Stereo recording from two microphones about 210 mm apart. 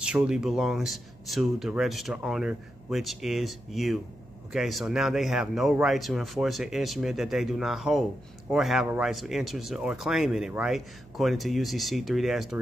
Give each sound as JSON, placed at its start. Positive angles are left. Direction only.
{"t": 0.0, "sound": "speech", "side_deg": -5}